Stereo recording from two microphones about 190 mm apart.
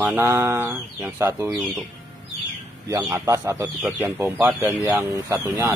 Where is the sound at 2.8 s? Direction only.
20° right (ahead or behind).